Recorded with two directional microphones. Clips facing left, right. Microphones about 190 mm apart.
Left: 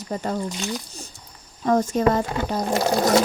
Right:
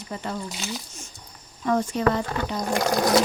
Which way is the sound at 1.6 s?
40° left (ahead or behind).